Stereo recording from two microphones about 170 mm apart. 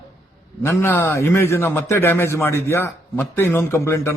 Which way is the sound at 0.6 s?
15° left (ahead or behind).